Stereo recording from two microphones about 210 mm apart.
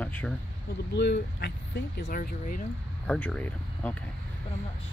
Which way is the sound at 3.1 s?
5° left (ahead or behind).